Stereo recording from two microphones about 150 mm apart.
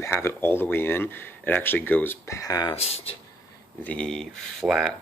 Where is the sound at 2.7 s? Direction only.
40° left (ahead or behind).